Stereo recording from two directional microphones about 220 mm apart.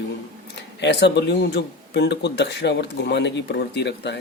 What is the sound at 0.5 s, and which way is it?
Speech, 50° left (ahead or behind).